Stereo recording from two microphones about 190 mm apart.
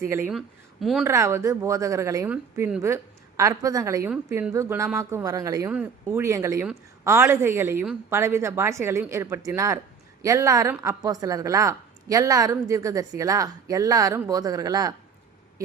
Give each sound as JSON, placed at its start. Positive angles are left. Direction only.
{"t": 0.0, "sound": "a woman's voice", "side_deg": -10}
{"t": 0.3, "sound": "speech", "side_deg": 0}
{"t": 1.0, "sound": "a woman's voice", "side_deg": -15}